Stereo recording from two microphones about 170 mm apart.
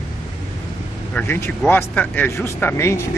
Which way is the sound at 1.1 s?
10° left (ahead or behind).